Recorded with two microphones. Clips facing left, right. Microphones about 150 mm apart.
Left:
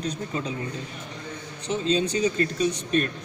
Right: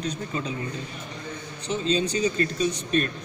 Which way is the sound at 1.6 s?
55° left (ahead or behind).